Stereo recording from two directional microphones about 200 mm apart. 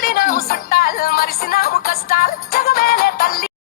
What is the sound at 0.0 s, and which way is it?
Music, 45° left (ahead or behind).